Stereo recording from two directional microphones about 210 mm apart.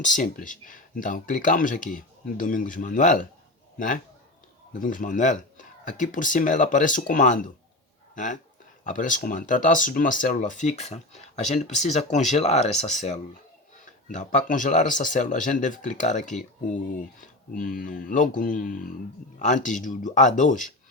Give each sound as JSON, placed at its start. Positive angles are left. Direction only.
{"t": 0.0, "sound": "speech", "side_deg": 35}
{"t": 14.1, "sound": "speech", "side_deg": 35}
{"t": 17.5, "sound": "speech", "side_deg": 40}